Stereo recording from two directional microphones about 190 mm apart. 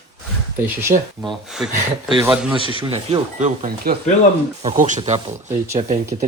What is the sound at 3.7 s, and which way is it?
Speech, 50° right (ahead or behind).